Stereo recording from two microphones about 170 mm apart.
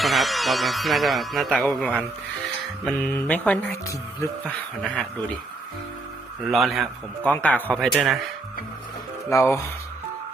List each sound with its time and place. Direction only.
0.0 s a man's voice: centre (ahead or behind)
6.4 s a man's voice: centre (ahead or behind)
7.7 s a man's voice: 5° right (ahead or behind)
9.3 s speech: 15° left (ahead or behind)